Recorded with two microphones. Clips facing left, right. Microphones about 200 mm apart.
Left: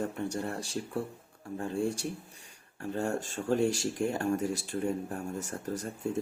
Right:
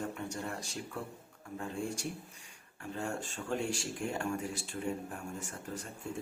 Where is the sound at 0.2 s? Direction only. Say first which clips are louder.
Left 6 dB; 35° left (ahead or behind).